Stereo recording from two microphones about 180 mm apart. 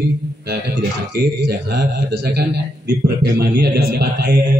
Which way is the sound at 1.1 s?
70° right (ahead or behind).